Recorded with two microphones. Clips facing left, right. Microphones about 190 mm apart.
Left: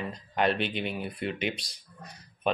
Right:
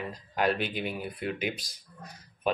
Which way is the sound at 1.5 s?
65° left (ahead or behind).